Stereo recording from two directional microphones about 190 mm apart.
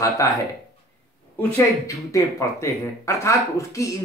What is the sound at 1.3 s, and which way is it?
Speech, 15° left (ahead or behind).